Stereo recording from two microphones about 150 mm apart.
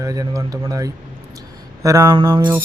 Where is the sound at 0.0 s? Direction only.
25° right (ahead or behind).